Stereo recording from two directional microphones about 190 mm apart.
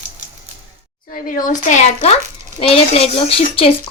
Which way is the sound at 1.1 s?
45° left (ahead or behind).